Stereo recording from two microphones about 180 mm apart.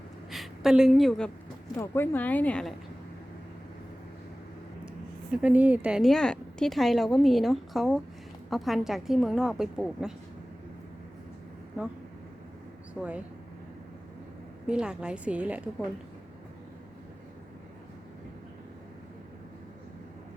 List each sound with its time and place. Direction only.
0.3 s a woman's voice: centre (ahead or behind)
1.7 s speech: 15° left (ahead or behind)
5.3 s a woman's voice: 5° right (ahead or behind)
12.9 s speech: 5° right (ahead or behind)
14.7 s a woman's voice: 5° right (ahead or behind)